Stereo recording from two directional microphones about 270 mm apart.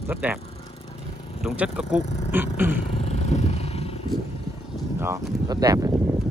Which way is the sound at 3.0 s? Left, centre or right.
Left.